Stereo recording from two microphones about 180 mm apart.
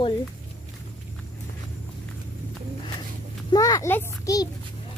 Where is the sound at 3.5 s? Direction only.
20° left (ahead or behind).